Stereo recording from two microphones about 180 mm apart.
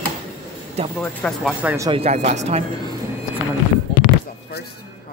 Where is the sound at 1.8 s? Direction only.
35° right (ahead or behind).